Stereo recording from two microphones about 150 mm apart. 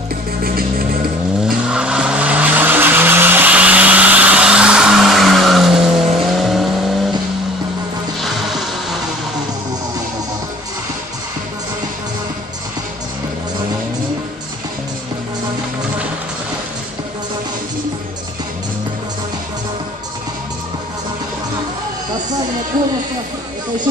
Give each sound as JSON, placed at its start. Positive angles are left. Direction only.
{"t": 0.4, "sound": "music", "side_deg": -80}
{"t": 1.4, "sound": "vehicle", "side_deg": -5}